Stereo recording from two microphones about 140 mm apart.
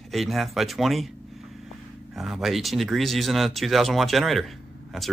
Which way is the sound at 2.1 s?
5° right (ahead or behind).